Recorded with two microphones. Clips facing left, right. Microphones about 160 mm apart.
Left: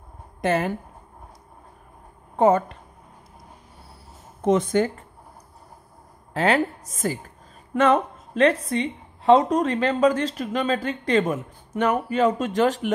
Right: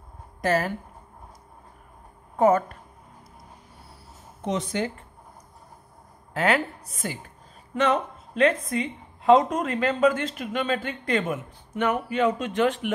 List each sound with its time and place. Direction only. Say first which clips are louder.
0.4 s speech: left 1 dB; 20° left (ahead or behind)
2.3 s a woman's voice: left 1 dB; 25° left (ahead or behind)
4.4 s speech: left 7 dB; 50° left (ahead or behind)
6.3 s a woman's voice: left 3 dB; 30° left (ahead or behind)